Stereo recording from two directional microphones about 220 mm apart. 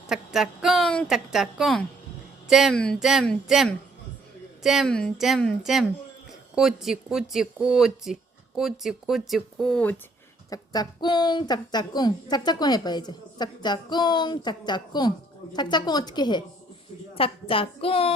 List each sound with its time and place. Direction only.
0.1 s speech: centre (ahead or behind)
10.5 s a woman's voice: 15° left (ahead or behind)